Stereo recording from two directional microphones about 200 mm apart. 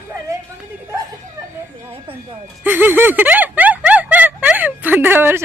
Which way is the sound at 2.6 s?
10° right (ahead or behind).